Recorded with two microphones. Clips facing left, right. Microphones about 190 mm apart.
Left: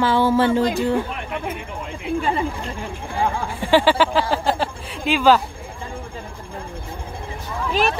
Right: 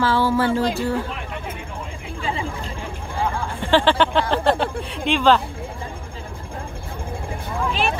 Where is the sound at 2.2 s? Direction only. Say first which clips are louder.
Left 4 dB; 55° left (ahead or behind).